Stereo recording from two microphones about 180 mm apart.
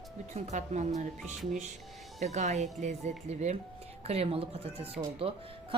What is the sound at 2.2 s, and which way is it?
Speech, 40° right (ahead or behind).